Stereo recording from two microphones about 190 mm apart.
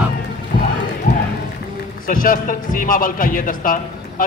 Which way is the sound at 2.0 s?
45° left (ahead or behind).